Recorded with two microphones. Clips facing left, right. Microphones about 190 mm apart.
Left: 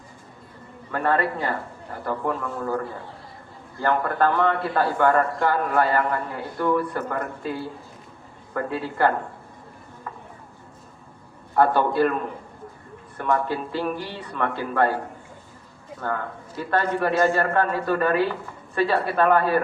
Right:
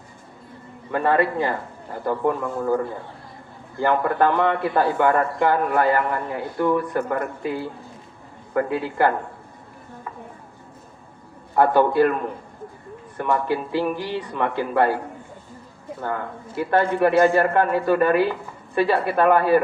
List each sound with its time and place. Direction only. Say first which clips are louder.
0.9 s a man's voice: right 3 dB; 15° right (ahead or behind)
3.8 s a man's voice: right 3 dB; 15° right (ahead or behind)
11.5 s a man's voice: right 3 dB; 15° right (ahead or behind)
13.1 s a man's voice: right 2 dB; 15° right (ahead or behind)
16.6 s a man's voice: right 4 dB; 15° right (ahead or behind)